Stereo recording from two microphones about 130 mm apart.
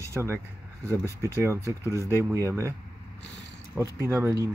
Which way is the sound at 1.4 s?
20° right (ahead or behind).